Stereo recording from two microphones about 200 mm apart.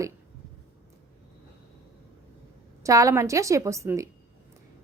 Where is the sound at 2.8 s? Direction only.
15° right (ahead or behind).